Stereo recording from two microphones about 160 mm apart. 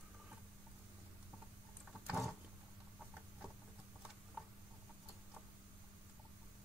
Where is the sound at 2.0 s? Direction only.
Centre (ahead or behind).